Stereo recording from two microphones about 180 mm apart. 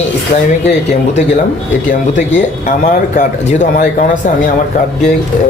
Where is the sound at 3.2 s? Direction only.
40° left (ahead or behind).